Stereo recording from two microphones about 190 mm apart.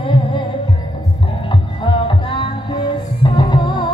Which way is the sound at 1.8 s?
25° left (ahead or behind).